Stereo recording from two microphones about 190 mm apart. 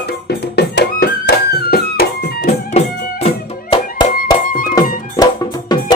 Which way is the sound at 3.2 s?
25° left (ahead or behind).